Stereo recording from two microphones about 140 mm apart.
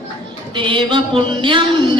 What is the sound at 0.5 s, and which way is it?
Music, 35° right (ahead or behind).